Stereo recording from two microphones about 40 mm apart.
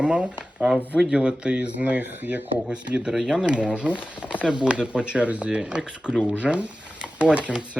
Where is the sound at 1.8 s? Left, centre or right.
Right.